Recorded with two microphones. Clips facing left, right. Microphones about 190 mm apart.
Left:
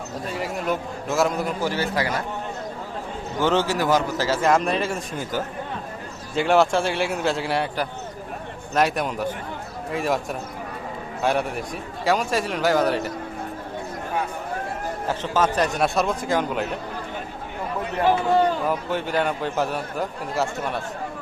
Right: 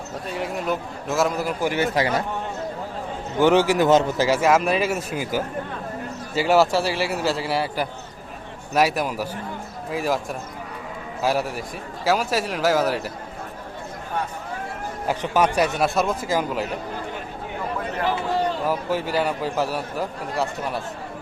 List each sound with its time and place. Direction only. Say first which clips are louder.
0.3 s a man's voice: even; centre (ahead or behind)
1.6 s a man's voice: right 5 dB; 20° right (ahead or behind)
3.4 s speech: right 5 dB; 15° right (ahead or behind)
4.3 s a man's voice: even; 5° right (ahead or behind)
11.2 s a man's voice: even; 5° right (ahead or behind)
15.0 s speech: right 2 dB; 15° right (ahead or behind)
18.7 s a man's voice: right 1 dB; 5° right (ahead or behind)